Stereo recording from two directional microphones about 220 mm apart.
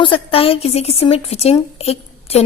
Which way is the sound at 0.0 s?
25° left (ahead or behind).